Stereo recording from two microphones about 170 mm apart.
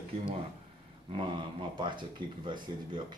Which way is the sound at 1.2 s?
30° right (ahead or behind).